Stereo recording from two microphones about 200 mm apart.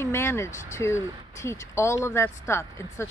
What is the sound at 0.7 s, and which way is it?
Speech, 15° left (ahead or behind).